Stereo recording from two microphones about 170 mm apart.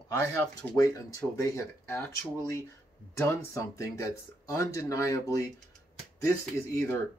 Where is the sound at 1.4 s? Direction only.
15° left (ahead or behind).